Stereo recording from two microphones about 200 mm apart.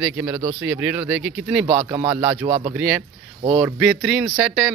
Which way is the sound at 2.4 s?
30° right (ahead or behind).